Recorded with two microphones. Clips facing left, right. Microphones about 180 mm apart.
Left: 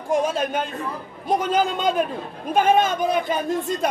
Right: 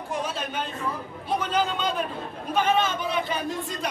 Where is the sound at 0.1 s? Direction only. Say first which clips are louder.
Left 9 dB; 50° left (ahead or behind).